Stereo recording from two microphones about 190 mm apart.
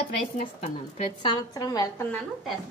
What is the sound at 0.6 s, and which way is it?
A woman's voice, 25° left (ahead or behind).